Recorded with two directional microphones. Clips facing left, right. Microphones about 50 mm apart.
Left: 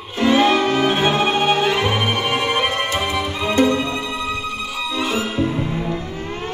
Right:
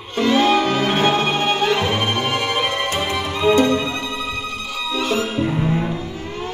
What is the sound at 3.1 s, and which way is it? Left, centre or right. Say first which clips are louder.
Music: right 5 dB; centre.